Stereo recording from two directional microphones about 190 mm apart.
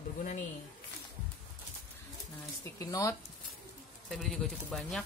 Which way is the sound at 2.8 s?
15° left (ahead or behind).